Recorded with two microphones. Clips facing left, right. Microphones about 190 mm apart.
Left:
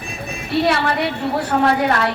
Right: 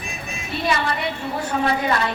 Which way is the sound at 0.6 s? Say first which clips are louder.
Left 1 dB; 70° left (ahead or behind).